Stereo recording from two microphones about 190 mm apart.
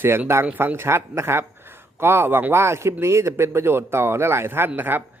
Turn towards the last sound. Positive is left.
turn(degrees=-10)  # may be behind; listen again after turning